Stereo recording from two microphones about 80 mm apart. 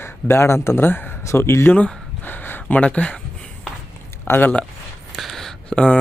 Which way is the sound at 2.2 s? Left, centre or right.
Left.